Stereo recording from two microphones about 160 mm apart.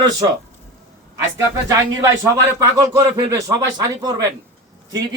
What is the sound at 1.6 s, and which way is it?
A man's voice, 15° right (ahead or behind).